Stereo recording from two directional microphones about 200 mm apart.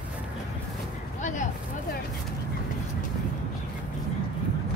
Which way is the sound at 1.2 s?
40° left (ahead or behind).